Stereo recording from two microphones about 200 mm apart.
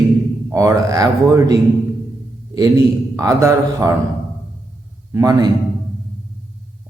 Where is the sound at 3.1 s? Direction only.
15° right (ahead or behind).